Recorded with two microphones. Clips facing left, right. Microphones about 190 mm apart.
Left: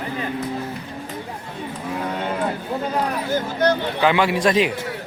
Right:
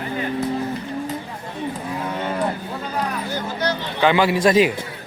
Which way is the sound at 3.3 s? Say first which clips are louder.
Left 7 dB; 50° left (ahead or behind).